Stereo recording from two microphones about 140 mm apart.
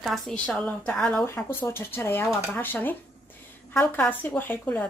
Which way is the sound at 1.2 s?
15° left (ahead or behind).